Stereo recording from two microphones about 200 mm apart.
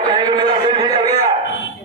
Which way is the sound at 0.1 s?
20° right (ahead or behind).